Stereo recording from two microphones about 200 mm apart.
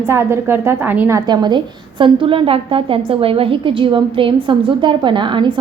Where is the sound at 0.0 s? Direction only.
10° right (ahead or behind).